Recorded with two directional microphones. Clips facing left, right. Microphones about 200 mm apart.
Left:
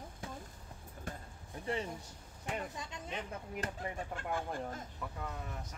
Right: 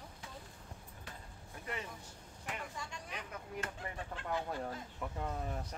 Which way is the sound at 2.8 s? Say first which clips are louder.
Left 3 dB; 25° left (ahead or behind).